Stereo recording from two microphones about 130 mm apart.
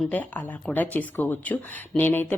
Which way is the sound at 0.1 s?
15° left (ahead or behind).